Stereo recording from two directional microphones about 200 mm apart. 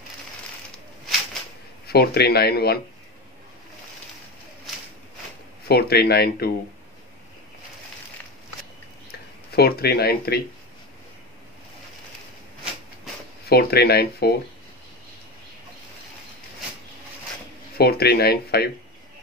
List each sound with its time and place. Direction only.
1.9 s speech: 55° left (ahead or behind)
5.7 s speech: 50° left (ahead or behind)
9.6 s speech: 50° left (ahead or behind)
13.5 s speech: 50° left (ahead or behind)
17.7 s speech: 50° left (ahead or behind)